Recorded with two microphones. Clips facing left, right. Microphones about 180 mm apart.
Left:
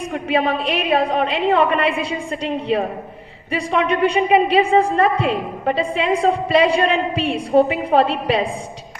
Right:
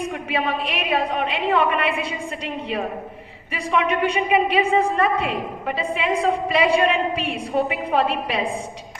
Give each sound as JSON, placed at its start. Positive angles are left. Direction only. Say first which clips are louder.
{"t": 0.1, "sound": "a woman's voice", "louder": "left 5 dB", "side_deg": 35}